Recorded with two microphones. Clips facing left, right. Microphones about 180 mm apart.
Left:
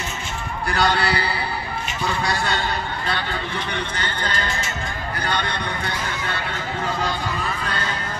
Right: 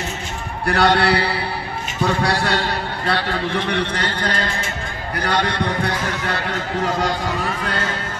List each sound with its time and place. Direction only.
0.7 s a man's voice: 65° right (ahead or behind)
5.2 s a man's voice: 75° right (ahead or behind)